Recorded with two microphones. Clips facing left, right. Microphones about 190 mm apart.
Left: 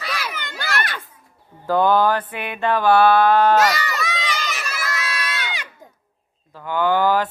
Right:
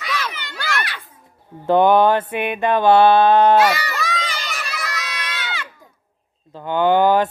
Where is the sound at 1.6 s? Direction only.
20° right (ahead or behind).